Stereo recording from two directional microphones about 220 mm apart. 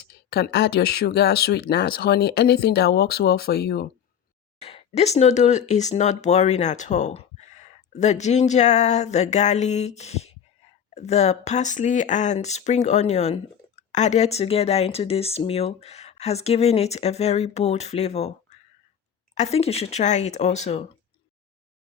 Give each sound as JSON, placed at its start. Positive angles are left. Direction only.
{"t": 0.0, "sound": "speech", "side_deg": 45}
{"t": 4.6, "sound": "speech", "side_deg": 25}